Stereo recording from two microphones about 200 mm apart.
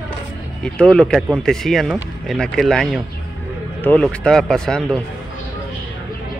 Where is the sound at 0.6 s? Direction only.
5° left (ahead or behind).